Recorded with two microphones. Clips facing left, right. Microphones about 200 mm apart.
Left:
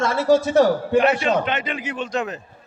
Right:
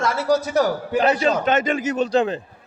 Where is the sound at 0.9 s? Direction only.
35° right (ahead or behind).